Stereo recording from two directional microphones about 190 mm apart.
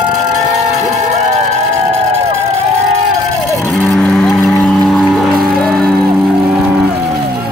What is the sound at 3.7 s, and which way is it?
Cattle, 5° left (ahead or behind).